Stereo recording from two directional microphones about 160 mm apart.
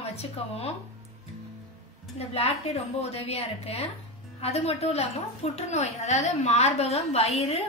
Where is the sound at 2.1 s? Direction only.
40° left (ahead or behind).